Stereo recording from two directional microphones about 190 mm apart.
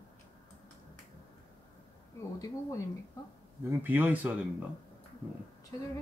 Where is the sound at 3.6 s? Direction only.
10° right (ahead or behind).